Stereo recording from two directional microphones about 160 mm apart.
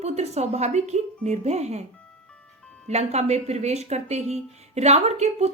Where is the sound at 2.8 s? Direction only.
45° right (ahead or behind).